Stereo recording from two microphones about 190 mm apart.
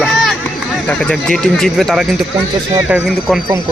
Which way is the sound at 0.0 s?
Centre (ahead or behind).